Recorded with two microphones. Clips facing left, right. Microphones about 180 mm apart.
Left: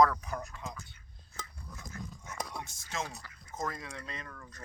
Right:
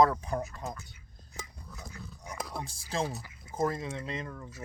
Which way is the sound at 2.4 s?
Centre (ahead or behind).